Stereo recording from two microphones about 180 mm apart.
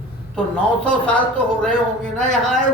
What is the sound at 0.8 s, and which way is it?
Speech, 5° left (ahead or behind).